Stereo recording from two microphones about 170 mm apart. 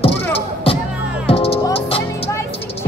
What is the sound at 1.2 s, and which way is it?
Music, 35° left (ahead or behind).